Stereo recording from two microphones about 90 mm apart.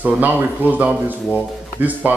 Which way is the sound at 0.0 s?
20° right (ahead or behind).